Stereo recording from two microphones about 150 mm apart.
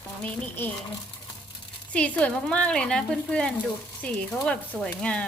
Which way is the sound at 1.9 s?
10° left (ahead or behind).